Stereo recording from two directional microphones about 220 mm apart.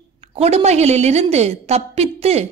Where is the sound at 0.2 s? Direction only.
30° right (ahead or behind).